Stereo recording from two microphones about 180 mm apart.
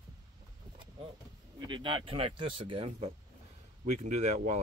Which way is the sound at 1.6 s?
25° right (ahead or behind).